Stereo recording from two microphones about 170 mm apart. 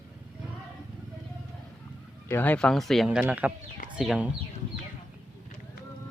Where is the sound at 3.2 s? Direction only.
10° right (ahead or behind).